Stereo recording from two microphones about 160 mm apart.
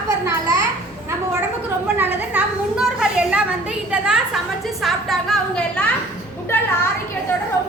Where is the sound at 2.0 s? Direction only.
10° right (ahead or behind).